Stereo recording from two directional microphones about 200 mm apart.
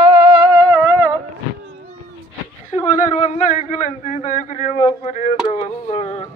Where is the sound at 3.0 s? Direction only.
35° left (ahead or behind).